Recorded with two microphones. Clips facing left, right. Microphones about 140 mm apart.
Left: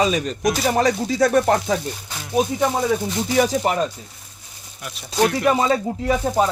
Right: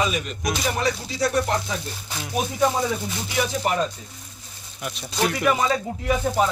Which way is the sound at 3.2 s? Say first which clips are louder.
Left 7 dB; 40° left (ahead or behind).